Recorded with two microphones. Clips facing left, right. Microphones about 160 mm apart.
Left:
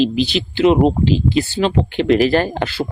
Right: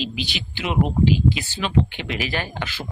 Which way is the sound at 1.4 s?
40° left (ahead or behind).